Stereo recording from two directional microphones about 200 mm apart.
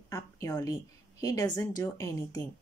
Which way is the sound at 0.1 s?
15° left (ahead or behind).